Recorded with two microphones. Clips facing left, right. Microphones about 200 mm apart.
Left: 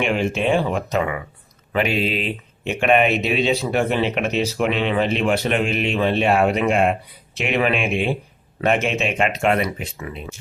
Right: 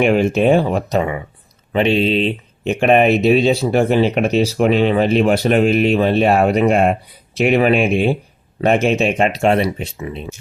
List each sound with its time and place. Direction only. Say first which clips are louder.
0.0 s speech: right 7 dB; 45° right (ahead or behind); by 2.7 s 25° right (ahead or behind)
2.8 s speech: right 5 dB; 40° right (ahead or behind)